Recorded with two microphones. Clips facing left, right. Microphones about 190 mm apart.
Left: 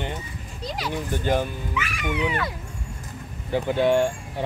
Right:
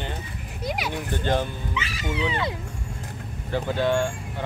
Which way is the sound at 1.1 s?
10° left (ahead or behind).